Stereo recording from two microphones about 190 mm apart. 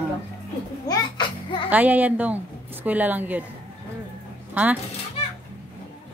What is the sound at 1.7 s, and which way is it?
A woman's voice, 10° right (ahead or behind).